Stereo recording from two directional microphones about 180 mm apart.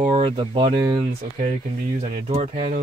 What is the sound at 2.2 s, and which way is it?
Speech, 35° right (ahead or behind).